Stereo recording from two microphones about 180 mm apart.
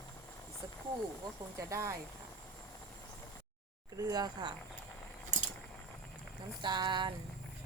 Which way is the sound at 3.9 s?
20° right (ahead or behind).